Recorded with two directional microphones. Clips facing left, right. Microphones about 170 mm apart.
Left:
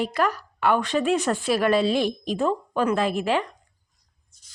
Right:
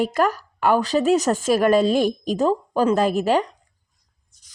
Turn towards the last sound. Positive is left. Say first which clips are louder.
# right 4 dB
turn(degrees=-40)  # may be behind; listen again after turning